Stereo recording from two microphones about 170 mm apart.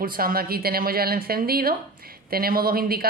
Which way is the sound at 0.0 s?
60° right (ahead or behind).